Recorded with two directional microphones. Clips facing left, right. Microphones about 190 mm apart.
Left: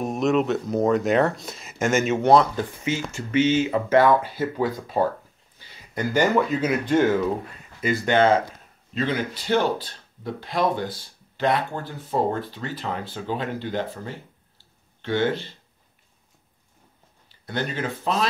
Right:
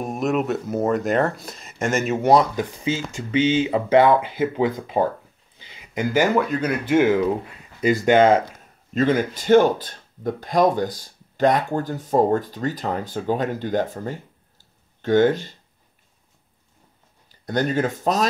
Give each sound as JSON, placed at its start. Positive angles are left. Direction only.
{"t": 0.0, "sound": "speech", "side_deg": 0}
{"t": 2.1, "sound": "speech", "side_deg": -10}
{"t": 3.3, "sound": "speech", "side_deg": -30}
{"t": 5.6, "sound": "a sound", "side_deg": -15}
{"t": 6.3, "sound": "speech", "side_deg": 0}
{"t": 6.9, "sound": "speech", "side_deg": -10}
{"t": 7.8, "sound": "speech", "side_deg": -40}
{"t": 8.1, "sound": "speech", "side_deg": -15}
{"t": 8.9, "sound": "speech", "side_deg": -45}
{"t": 14.6, "sound": "a sound", "side_deg": -45}
{"t": 17.3, "sound": "speech", "side_deg": -45}